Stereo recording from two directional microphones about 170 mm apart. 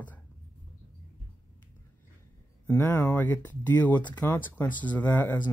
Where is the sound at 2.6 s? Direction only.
15° left (ahead or behind).